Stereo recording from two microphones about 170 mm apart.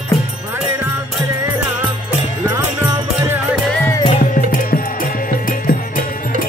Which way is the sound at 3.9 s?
25° left (ahead or behind).